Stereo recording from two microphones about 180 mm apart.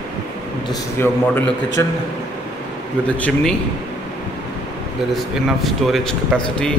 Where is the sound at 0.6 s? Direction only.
15° left (ahead or behind).